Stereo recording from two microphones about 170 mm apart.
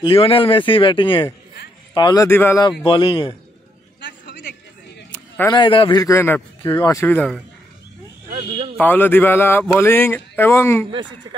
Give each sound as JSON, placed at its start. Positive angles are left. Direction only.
{"t": 0.0, "sound": "a man's voice", "side_deg": 35}
{"t": 2.2, "sound": "speech", "side_deg": 15}
{"t": 2.9, "sound": "a man's voice", "side_deg": 30}
{"t": 4.0, "sound": "a sound", "side_deg": 90}
{"t": 5.5, "sound": "a man's voice", "side_deg": 30}
{"t": 6.6, "sound": "a man's voice", "side_deg": 25}
{"t": 8.3, "sound": "speech", "side_deg": -35}
{"t": 8.7, "sound": "speech", "side_deg": 10}